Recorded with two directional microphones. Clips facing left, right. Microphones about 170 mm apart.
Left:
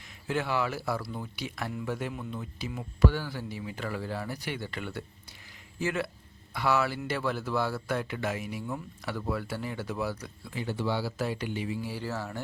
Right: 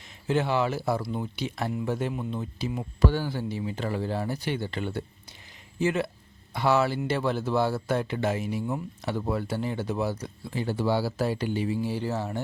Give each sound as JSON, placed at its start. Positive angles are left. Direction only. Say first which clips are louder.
{"t": 0.3, "sound": "speech", "louder": "right 5 dB", "side_deg": -25}